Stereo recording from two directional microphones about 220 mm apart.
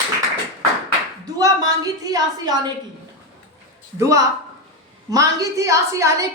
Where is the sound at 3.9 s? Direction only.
15° right (ahead or behind).